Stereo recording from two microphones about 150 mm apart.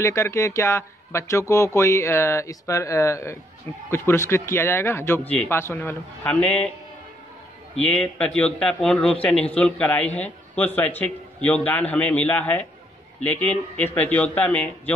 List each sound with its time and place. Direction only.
0.0 s speech: 20° left (ahead or behind)
7.7 s speech: 5° left (ahead or behind)